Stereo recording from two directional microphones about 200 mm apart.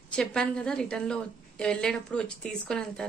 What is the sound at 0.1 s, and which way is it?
A woman's voice, 5° left (ahead or behind).